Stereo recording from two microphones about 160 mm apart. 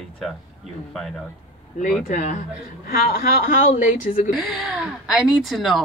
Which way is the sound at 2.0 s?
55° left (ahead or behind).